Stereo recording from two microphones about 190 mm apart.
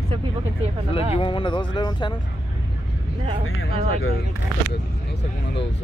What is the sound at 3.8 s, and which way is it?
Speech, 90° left.